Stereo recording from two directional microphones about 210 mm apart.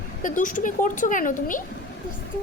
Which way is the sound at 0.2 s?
40° left (ahead or behind).